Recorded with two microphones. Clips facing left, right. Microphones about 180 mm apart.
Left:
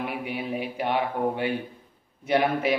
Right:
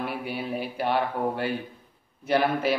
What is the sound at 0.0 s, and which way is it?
A man's voice, 15° left (ahead or behind).